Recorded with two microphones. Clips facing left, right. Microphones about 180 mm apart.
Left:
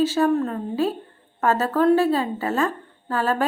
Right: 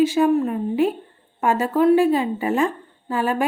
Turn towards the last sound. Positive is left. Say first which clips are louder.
# right 1 dB
turn(degrees=-15)  # may be behind; listen again after turning